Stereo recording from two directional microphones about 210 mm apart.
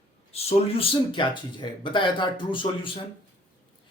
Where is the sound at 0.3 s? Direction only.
30° left (ahead or behind).